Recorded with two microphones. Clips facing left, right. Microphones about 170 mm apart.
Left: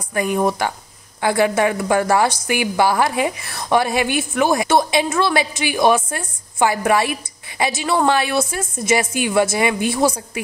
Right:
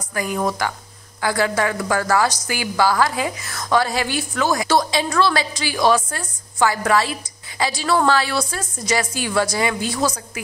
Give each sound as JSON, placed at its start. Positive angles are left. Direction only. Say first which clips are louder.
{"t": 0.1, "sound": "a woman's voice", "louder": "left 4 dB", "side_deg": 20}